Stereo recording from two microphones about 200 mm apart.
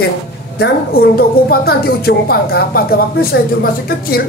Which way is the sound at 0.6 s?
50° left (ahead or behind).